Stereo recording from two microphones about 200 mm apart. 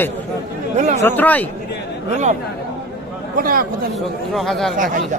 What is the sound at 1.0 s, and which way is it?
Speech, 10° left (ahead or behind).